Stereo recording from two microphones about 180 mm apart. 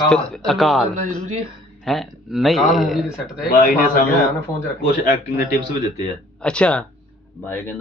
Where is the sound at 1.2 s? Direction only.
40° right (ahead or behind).